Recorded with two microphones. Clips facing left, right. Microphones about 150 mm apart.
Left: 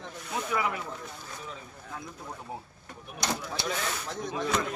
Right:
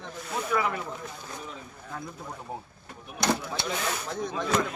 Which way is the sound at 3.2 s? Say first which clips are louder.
Right 5 dB; 55° right (ahead or behind).